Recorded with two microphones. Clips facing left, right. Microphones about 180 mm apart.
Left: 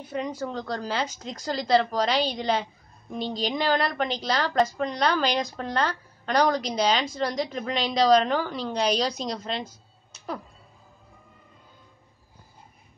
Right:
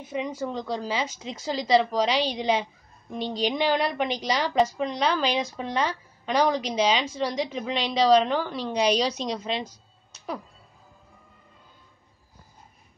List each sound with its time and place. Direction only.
0.0 s a woman's voice: 5° right (ahead or behind)